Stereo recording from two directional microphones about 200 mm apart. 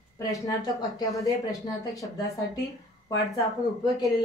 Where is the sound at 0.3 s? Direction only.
15° left (ahead or behind).